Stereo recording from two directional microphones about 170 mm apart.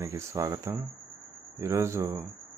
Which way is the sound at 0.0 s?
15° right (ahead or behind).